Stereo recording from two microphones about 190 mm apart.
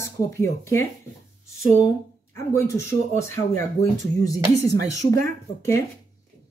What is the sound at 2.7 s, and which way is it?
Speech, 15° left (ahead or behind).